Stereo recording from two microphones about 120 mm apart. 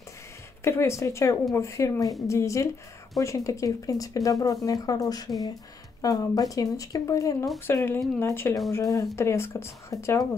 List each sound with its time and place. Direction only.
0.7 s speech: 25° left (ahead or behind)